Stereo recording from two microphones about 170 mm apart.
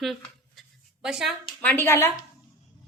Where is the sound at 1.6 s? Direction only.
15° left (ahead or behind).